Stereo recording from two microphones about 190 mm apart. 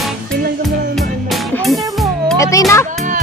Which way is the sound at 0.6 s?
Centre (ahead or behind).